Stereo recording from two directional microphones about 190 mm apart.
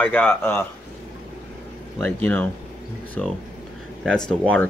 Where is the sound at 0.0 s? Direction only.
10° left (ahead or behind).